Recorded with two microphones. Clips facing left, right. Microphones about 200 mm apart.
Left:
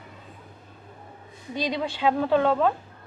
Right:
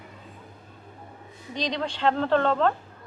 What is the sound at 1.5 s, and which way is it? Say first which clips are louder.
A woman's voice: left 1 dB; 5° left (ahead or behind).